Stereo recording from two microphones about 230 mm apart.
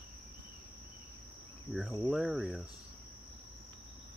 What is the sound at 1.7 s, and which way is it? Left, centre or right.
Cricket, centre.